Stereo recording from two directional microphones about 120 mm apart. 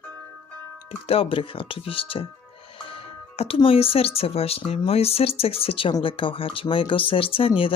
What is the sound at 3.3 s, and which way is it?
Speech, 50° left (ahead or behind).